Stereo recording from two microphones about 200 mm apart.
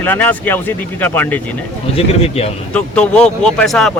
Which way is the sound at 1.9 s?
30° left (ahead or behind).